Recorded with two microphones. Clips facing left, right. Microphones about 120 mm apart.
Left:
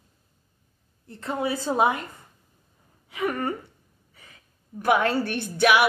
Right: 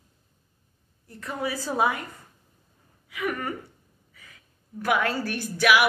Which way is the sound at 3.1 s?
30° left (ahead or behind).